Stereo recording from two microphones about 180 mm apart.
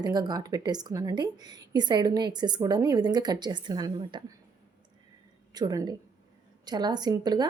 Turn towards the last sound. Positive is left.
turn(degrees=-20)  # may be behind; listen again after turning